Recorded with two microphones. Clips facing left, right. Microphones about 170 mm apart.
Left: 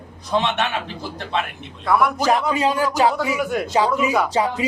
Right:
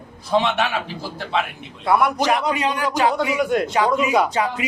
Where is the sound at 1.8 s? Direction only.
Centre (ahead or behind).